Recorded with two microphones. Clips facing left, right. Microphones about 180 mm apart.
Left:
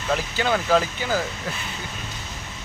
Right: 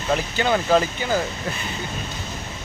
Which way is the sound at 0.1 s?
Centre (ahead or behind).